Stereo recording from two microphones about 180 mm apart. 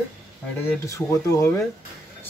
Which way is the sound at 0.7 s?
15° left (ahead or behind).